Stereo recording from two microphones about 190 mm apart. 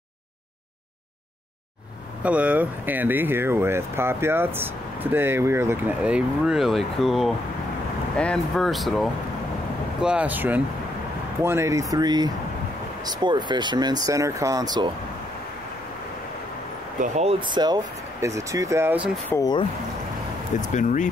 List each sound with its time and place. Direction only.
2.2 s speech: 5° right (ahead or behind)
17.0 s speech: 35° right (ahead or behind); by 19.0 s 10° right (ahead or behind)
19.2 s speech: 15° left (ahead or behind)
20.6 s speech: 40° left (ahead or behind)